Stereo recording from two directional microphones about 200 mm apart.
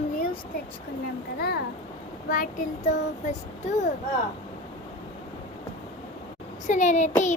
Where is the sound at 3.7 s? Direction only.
35° left (ahead or behind).